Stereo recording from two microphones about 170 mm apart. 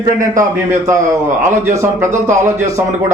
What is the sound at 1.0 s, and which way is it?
Speech, 45° right (ahead or behind).